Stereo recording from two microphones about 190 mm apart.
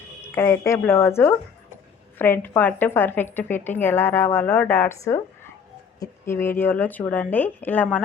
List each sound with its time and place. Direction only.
0.3 s a woman's voice: 15° left (ahead or behind)